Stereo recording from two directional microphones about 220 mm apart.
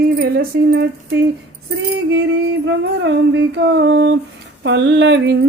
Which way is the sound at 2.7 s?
55° right (ahead or behind).